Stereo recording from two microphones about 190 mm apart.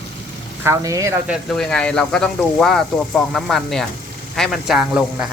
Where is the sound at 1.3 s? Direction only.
5° left (ahead or behind).